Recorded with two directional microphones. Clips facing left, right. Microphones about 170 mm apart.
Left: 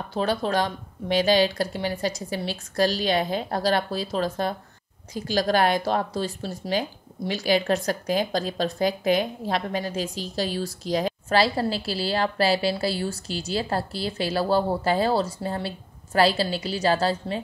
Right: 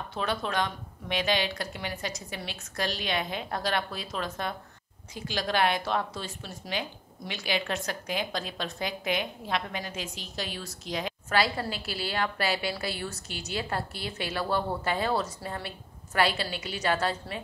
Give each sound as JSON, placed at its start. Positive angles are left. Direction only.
{"t": 0.1, "sound": "a woman's voice", "side_deg": 35}